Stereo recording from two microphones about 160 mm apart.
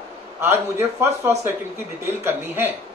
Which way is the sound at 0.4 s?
15° right (ahead or behind).